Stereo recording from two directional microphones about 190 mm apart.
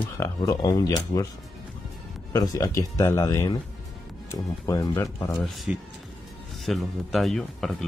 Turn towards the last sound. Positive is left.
turn(degrees=0)  # may be behind; listen again after turning